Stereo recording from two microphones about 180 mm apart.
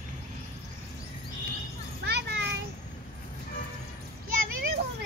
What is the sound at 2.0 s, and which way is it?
Children playing, 70° right (ahead or behind).